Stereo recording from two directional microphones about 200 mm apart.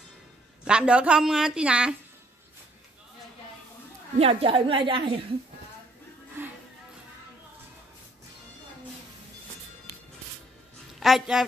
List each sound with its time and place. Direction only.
0.7 s a woman's voice: 5° right (ahead or behind)
4.2 s a woman's voice: 30° right (ahead or behind)
6.4 s music: 10° right (ahead or behind)
11.0 s a woman's voice: centre (ahead or behind)